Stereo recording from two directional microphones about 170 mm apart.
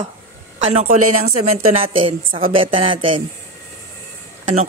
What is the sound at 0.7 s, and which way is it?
A woman's voice, 35° right (ahead or behind).